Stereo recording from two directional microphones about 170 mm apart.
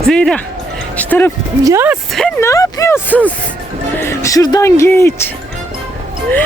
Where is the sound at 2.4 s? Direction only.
20° left (ahead or behind).